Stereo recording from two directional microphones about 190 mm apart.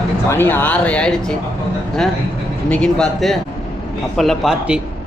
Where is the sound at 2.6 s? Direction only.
5° left (ahead or behind).